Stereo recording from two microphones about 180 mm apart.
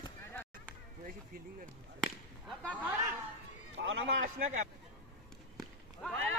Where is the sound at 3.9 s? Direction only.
90° right.